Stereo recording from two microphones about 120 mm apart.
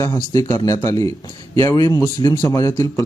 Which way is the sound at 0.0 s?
30° left (ahead or behind).